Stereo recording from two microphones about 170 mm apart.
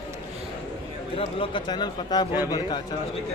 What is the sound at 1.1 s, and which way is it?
A man's voice, 30° left (ahead or behind).